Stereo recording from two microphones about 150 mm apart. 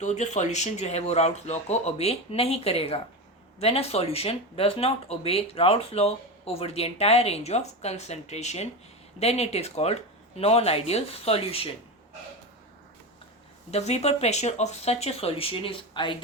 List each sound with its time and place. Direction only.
0.0 s speech: 50° left (ahead or behind)
13.7 s speech: 45° left (ahead or behind)